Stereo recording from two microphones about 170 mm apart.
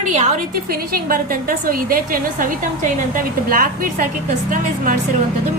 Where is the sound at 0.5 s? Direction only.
60° right (ahead or behind).